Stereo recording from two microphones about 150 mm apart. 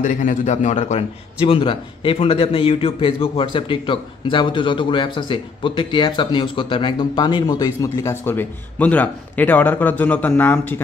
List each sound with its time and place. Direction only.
0.0 s a man's voice: 55° left (ahead or behind); by 10.8 s 10° left (ahead or behind)